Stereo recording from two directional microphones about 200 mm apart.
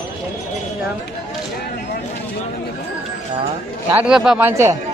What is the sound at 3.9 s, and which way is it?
Speech, 5° right (ahead or behind).